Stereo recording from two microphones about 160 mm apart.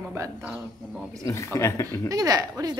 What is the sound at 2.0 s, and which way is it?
Speech, 20° right (ahead or behind).